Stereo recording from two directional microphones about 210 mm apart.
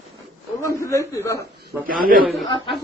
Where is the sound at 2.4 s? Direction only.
20° left (ahead or behind).